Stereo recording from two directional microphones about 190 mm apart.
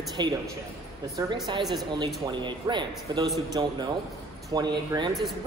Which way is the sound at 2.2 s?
25° right (ahead or behind).